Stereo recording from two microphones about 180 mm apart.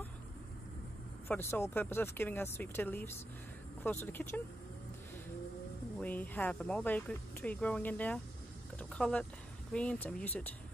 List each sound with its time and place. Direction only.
1.3 s speech: 15° left (ahead or behind)
5.9 s speech: 10° left (ahead or behind)
8.7 s a sound: 5° left (ahead or behind)
9.7 s speech: 5° left (ahead or behind)